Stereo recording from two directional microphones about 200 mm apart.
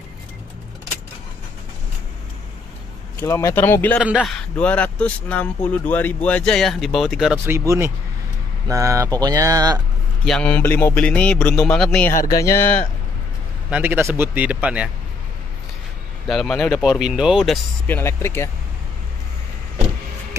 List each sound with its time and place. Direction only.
3.2 s a man's voice: 15° left (ahead or behind)
4.0 s speech: centre (ahead or behind)
7.3 s speech: 15° right (ahead or behind)
10.2 s a man's voice: 5° left (ahead or behind)
12.1 s speech: 45° left (ahead or behind)
12.4 s a man's voice: 15° left (ahead or behind)
13.7 s speech: 10° right (ahead or behind)
16.3 s speech: 5° left (ahead or behind)
17.8 s a man's voice: 10° left (ahead or behind)